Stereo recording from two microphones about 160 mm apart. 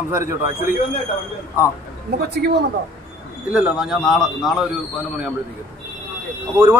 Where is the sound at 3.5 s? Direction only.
5° right (ahead or behind).